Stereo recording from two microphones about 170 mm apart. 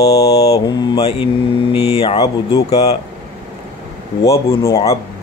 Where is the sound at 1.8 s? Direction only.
35° left (ahead or behind).